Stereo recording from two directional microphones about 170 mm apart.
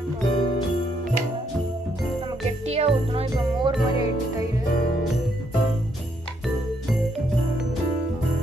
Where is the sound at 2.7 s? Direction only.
35° right (ahead or behind).